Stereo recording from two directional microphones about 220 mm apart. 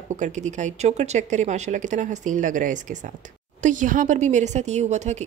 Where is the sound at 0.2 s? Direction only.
35° right (ahead or behind).